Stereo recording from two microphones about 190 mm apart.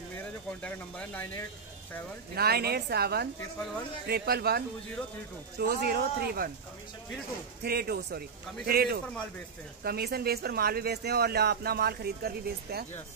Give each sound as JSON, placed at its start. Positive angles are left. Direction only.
{"t": 0.5, "sound": "speech", "side_deg": 10}
{"t": 2.3, "sound": "speech", "side_deg": -55}
{"t": 7.6, "sound": "a man's voice", "side_deg": -55}